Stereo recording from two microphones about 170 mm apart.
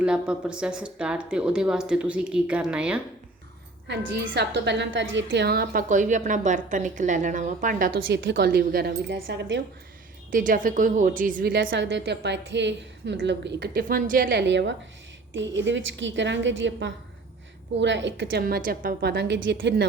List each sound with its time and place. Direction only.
0.0 s speech: 5° right (ahead or behind)
3.8 s a woman's voice: 90° right; by 8.0 s 55° right (ahead or behind)
8.0 s a woman's voice: 90° right
8.4 s a woman's voice: 60° right (ahead or behind)
9.2 s a woman's voice: 90° right
10.3 s a woman's voice: 50° right (ahead or behind)
11.5 s a woman's voice: 90° right; by 14.3 s 55° right (ahead or behind)
14.3 s a woman's voice: 90° right; by 19.1 s 55° right (ahead or behind)
19.1 s a woman's voice: 90° right